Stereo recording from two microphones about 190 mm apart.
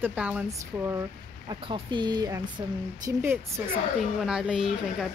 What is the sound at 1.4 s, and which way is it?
Speech, 25° right (ahead or behind).